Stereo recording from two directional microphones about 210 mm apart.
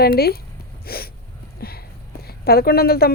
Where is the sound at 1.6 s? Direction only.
50° left (ahead or behind).